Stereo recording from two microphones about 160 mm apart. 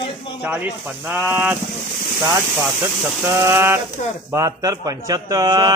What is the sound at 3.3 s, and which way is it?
Speech, 15° right (ahead or behind).